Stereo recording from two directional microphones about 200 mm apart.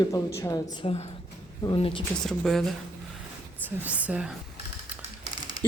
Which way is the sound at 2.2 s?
Centre (ahead or behind).